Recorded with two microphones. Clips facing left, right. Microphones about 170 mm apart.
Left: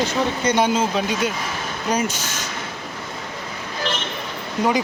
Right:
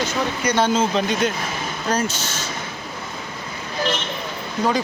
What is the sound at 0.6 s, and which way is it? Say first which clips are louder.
Speech: right 3 dB; 10° left (ahead or behind).